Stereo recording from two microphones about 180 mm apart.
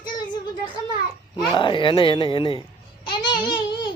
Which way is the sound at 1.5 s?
25° left (ahead or behind).